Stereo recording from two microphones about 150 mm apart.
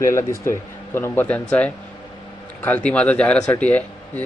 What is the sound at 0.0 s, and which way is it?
Speech, 20° left (ahead or behind).